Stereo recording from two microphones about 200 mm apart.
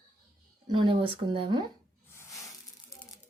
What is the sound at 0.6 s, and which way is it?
Speech, 25° right (ahead or behind).